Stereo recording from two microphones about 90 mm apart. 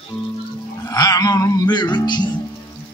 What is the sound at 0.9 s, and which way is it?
Music, 45° left (ahead or behind).